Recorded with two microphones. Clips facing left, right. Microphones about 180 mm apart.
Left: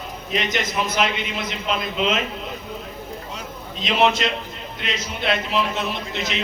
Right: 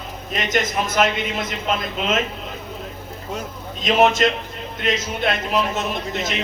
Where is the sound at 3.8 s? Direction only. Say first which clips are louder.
Right 3 dB; 45° right (ahead or behind).